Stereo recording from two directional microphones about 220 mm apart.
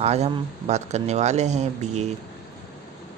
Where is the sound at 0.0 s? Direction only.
30° right (ahead or behind).